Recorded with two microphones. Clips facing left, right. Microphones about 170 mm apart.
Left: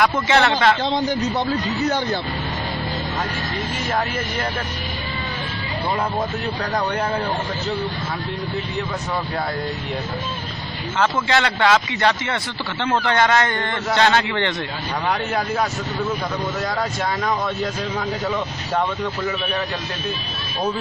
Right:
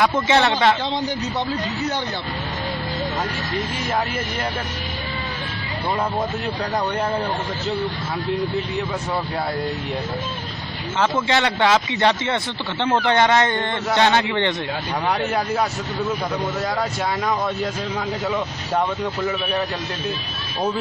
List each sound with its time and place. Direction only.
0.3 s speech: 20° right (ahead or behind)
11.0 s speech: 25° right (ahead or behind)